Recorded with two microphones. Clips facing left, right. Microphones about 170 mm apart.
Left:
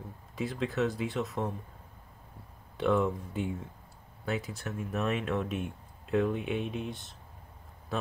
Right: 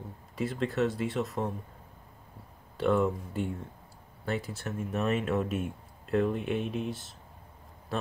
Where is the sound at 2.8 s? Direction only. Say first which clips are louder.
Right 1 dB; centre (ahead or behind).